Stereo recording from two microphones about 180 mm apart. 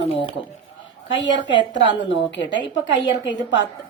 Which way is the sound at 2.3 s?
90° left.